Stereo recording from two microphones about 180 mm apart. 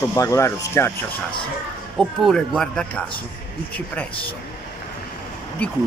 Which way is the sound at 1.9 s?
Centre (ahead or behind).